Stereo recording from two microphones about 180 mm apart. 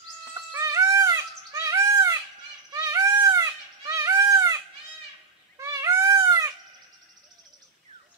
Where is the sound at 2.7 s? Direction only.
20° right (ahead or behind).